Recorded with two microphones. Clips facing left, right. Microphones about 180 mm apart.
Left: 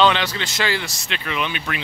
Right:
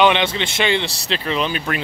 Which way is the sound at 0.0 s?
20° right (ahead or behind).